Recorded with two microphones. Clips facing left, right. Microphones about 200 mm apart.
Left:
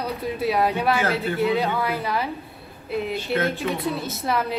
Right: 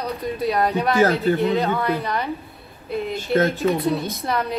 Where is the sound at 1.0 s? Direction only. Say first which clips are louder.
Right 7 dB; 40° right (ahead or behind).